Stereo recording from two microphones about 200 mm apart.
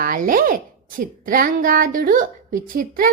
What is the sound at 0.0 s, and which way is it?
A woman's voice, 45° right (ahead or behind).